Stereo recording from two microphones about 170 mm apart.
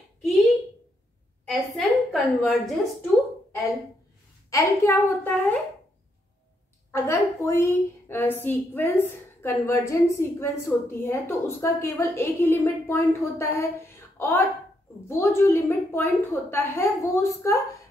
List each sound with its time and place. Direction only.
1.5 s a woman's voice: centre (ahead or behind)
4.5 s a woman's voice: 15° left (ahead or behind)
6.9 s a woman's voice: 15° left (ahead or behind)